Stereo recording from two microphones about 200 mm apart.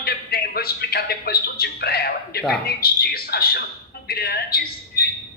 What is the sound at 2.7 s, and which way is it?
A man's voice, 50° left (ahead or behind).